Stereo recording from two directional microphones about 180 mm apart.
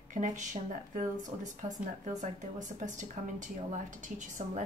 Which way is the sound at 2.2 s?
45° right (ahead or behind).